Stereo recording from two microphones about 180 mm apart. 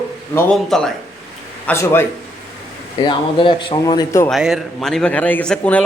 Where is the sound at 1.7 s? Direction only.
15° left (ahead or behind).